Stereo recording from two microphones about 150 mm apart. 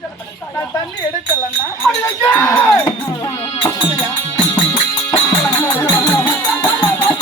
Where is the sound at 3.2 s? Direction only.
15° left (ahead or behind).